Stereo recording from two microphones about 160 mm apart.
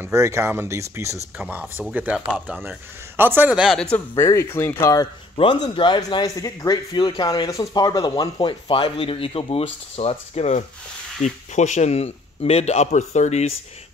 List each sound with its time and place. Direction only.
0.0 s speech: 20° right (ahead or behind); by 4.0 s 5° left (ahead or behind)
4.2 s speech: 15° left (ahead or behind)
5.3 s speech: 30° left (ahead or behind)